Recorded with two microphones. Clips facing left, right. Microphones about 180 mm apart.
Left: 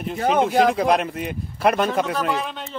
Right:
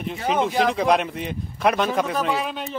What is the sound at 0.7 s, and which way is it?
Speech, centre (ahead or behind).